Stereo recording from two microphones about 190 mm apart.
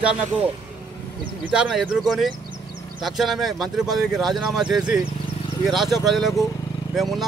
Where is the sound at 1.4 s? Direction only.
5° right (ahead or behind).